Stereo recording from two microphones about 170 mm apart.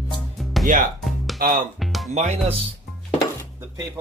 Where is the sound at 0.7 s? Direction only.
50° right (ahead or behind).